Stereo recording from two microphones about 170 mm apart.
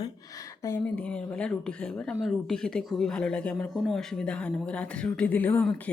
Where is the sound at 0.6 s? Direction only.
10° left (ahead or behind).